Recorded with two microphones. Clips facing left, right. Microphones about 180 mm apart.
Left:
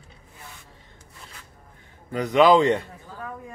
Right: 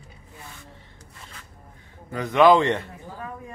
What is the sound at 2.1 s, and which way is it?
Speech, 15° left (ahead or behind).